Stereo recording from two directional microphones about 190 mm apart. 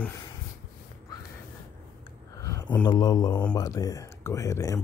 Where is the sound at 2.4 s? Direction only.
15° left (ahead or behind).